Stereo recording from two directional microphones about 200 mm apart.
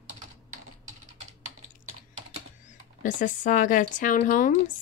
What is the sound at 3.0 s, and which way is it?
A woman's voice, 40° left (ahead or behind).